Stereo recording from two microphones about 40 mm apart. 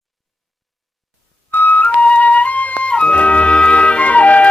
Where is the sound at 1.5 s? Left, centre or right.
Left.